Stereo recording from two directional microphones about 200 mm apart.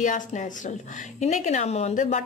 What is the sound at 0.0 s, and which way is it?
A woman's voice, 40° left (ahead or behind).